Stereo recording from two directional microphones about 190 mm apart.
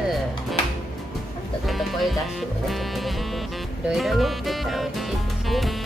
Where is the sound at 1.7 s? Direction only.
Centre (ahead or behind).